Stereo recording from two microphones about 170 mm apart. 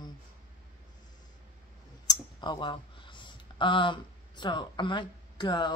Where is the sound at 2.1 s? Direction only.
25° left (ahead or behind).